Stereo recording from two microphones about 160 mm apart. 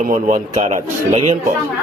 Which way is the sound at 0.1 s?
50° right (ahead or behind).